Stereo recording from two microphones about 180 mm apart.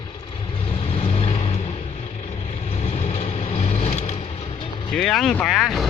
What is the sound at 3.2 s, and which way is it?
Vehicle, 40° left (ahead or behind).